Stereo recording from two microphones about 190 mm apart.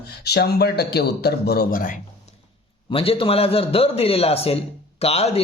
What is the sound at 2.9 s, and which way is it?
A man's voice, 30° left (ahead or behind).